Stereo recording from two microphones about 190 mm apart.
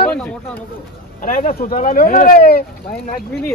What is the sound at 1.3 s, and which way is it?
Speech, 45° left (ahead or behind).